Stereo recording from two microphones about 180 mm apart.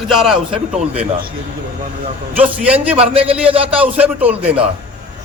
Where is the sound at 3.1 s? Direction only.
30° right (ahead or behind).